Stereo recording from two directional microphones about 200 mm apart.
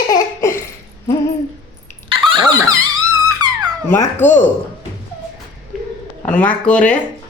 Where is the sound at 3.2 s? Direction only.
20° right (ahead or behind).